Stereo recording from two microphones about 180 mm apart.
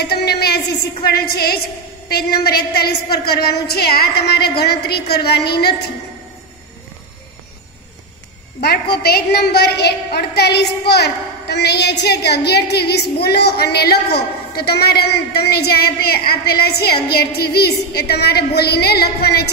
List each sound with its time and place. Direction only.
0.0 s a woman's voice: 60° left (ahead or behind)
8.5 s a woman's voice: 60° left (ahead or behind)